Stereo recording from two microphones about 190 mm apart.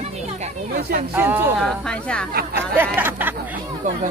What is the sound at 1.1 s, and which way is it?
Speech, 10° right (ahead or behind).